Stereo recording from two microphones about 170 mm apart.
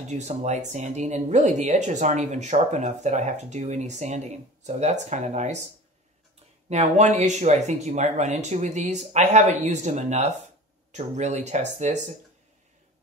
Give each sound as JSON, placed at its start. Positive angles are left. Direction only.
{"t": 0.1, "sound": "speech", "side_deg": -45}
{"t": 6.7, "sound": "speech", "side_deg": -40}